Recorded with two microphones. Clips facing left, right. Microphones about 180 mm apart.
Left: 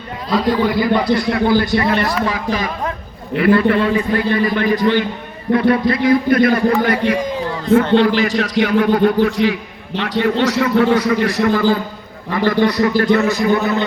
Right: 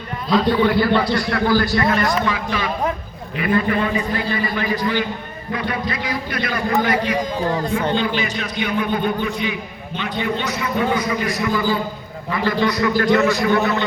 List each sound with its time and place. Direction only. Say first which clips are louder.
0.6 s a man's voice: left 1 dB; 10° left (ahead or behind); by 2.6 s 40° left (ahead or behind)
3.3 s a man's voice: left 6 dB; 70° left (ahead or behind)
7.9 s a man's voice: left 8 dB; 75° left (ahead or behind)
12.3 s a man's voice: left 4 dB; 40° left (ahead or behind)